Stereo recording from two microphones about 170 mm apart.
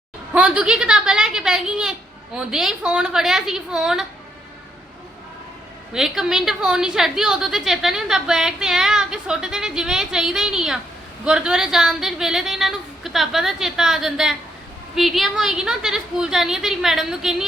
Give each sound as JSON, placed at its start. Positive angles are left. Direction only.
{"t": 0.3, "sound": "a woman's voice", "side_deg": -5}
{"t": 5.9, "sound": "a woman's voice", "side_deg": -5}